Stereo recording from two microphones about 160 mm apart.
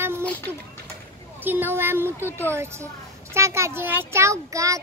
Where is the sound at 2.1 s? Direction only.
15° left (ahead or behind).